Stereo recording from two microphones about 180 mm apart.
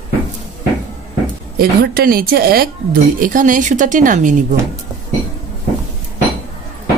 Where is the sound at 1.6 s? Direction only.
55° right (ahead or behind).